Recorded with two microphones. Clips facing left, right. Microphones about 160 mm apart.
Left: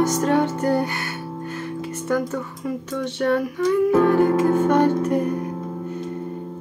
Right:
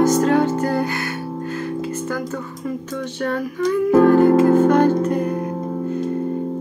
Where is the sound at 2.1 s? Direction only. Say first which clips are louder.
Left 3 dB; 20° left (ahead or behind).